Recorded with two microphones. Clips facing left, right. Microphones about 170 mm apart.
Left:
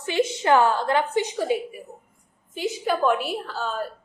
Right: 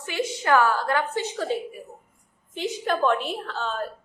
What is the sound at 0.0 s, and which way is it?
A woman's voice, 25° left (ahead or behind).